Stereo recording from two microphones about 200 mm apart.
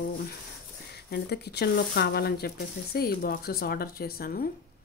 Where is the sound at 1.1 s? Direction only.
55° left (ahead or behind).